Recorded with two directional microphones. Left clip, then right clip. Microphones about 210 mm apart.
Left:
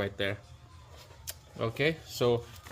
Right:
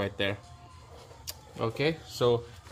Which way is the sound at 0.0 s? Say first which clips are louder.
Right 2 dB; 5° right (ahead or behind).